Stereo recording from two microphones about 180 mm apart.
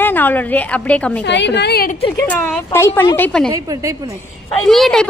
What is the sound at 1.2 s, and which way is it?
Speech, 75° left (ahead or behind).